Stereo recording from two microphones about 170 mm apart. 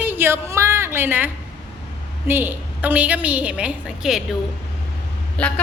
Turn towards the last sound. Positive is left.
turn(degrees=5)  # may be behind; listen again after turning